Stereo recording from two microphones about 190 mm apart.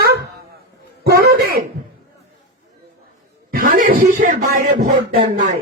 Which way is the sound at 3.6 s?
45° right (ahead or behind).